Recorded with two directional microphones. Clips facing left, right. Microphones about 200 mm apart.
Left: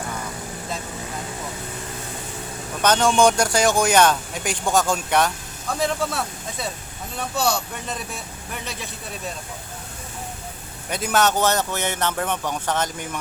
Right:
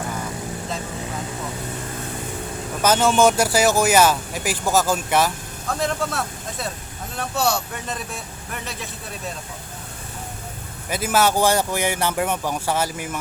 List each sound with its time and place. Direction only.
2.8 s speech: 5° right (ahead or behind)
10.8 s speech: 5° right (ahead or behind)